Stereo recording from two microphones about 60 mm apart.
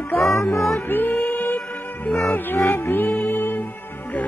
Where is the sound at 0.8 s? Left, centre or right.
Left.